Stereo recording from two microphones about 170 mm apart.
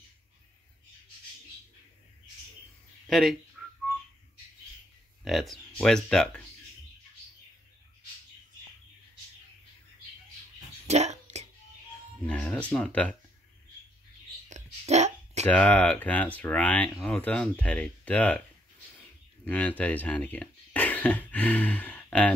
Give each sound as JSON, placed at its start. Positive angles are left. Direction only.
{"t": 3.1, "sound": "speech", "side_deg": 0}
{"t": 3.6, "sound": "whistling", "side_deg": 5}
{"t": 5.2, "sound": "speech", "side_deg": 0}
{"t": 10.9, "sound": "a sound", "side_deg": -40}
{"t": 12.3, "sound": "speech", "side_deg": 5}
{"t": 14.5, "sound": "a sound", "side_deg": -40}
{"t": 15.4, "sound": "speech", "side_deg": 10}
{"t": 19.4, "sound": "speech", "side_deg": 10}